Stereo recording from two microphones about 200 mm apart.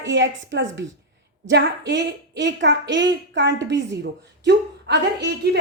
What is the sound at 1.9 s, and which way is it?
A woman's voice, 60° right (ahead or behind).